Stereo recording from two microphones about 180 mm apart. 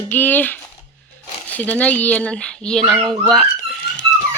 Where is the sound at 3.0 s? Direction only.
25° right (ahead or behind).